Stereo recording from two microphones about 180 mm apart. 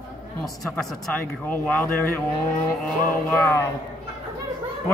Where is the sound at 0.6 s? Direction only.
Centre (ahead or behind).